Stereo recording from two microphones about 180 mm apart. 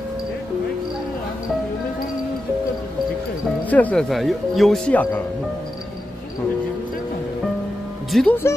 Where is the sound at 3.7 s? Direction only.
10° left (ahead or behind).